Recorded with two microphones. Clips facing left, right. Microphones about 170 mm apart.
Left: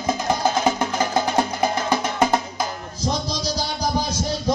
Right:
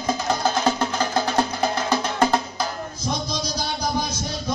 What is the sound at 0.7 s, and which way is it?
Music, 15° left (ahead or behind).